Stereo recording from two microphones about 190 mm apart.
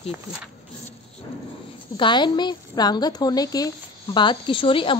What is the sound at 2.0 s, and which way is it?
Speech, 25° left (ahead or behind).